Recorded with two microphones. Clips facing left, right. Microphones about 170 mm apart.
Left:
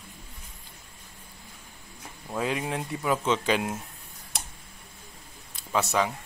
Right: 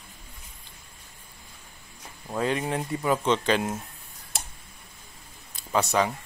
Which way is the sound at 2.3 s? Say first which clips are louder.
Right 2 dB; 5° left (ahead or behind).